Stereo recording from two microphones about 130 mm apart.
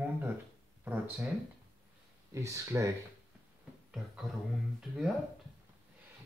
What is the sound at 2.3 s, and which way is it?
Speech, 25° right (ahead or behind).